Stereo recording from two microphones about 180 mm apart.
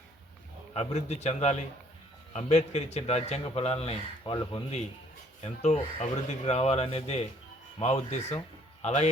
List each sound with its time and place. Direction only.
0.7 s a man's voice: 35° left (ahead or behind)
5.4 s a man's voice: 35° left (ahead or behind)